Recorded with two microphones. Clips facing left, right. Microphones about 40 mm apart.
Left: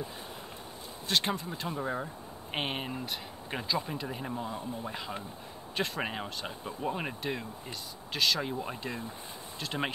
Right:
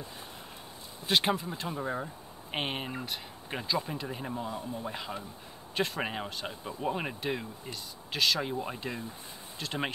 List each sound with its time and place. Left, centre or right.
1.0 s speech: centre